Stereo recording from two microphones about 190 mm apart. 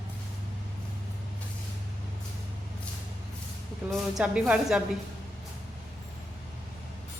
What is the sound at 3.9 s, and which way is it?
Speech, 5° right (ahead or behind).